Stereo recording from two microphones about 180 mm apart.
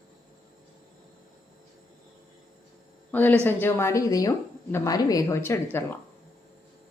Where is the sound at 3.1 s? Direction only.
10° left (ahead or behind).